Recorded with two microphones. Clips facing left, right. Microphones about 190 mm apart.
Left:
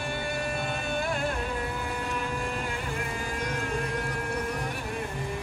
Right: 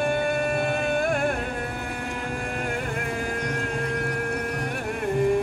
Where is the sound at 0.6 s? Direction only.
55° right (ahead or behind).